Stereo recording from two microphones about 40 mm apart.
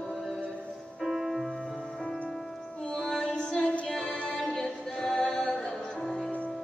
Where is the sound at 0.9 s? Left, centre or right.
Centre.